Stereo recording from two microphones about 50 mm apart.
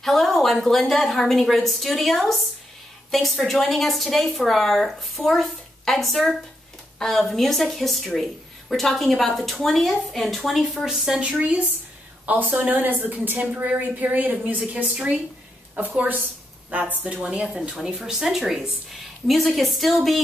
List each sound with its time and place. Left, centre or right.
0.0 s speech: centre
11.1 s a woman's voice: centre
12.3 s a woman's voice: right
17.0 s a woman's voice: right
17.8 s speech: centre